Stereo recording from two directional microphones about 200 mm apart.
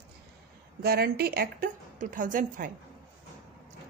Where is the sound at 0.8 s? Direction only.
50° right (ahead or behind).